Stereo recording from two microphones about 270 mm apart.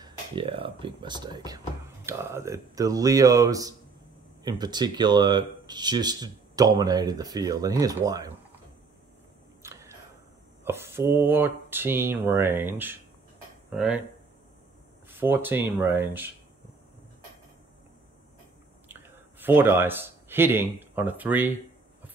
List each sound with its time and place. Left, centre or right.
0.0 s speech: centre
9.6 s camera: centre
10.6 s speech: centre
15.0 s speech: centre
18.9 s speech: centre